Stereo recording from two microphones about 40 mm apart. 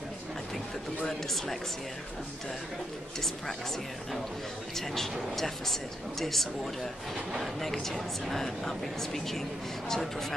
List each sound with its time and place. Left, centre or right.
1.0 s speech: centre
3.2 s speech: centre